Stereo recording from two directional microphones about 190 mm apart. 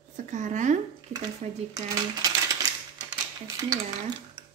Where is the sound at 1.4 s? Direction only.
35° right (ahead or behind).